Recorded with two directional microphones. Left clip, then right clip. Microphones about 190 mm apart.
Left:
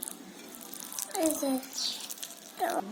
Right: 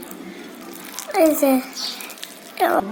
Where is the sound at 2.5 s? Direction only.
50° right (ahead or behind).